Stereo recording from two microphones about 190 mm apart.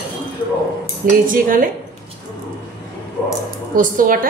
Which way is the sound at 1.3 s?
45° right (ahead or behind).